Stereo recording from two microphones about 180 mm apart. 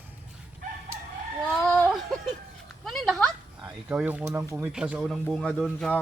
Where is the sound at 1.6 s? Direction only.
5° left (ahead or behind).